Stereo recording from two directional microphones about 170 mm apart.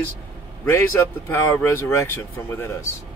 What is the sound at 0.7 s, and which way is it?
Speech, 15° left (ahead or behind).